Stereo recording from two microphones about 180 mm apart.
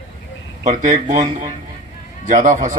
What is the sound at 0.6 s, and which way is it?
A man's voice, 40° right (ahead or behind).